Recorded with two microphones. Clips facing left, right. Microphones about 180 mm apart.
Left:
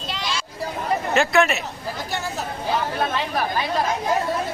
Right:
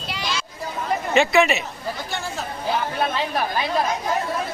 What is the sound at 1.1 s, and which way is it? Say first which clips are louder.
Speech: right 2 dB; centre (ahead or behind).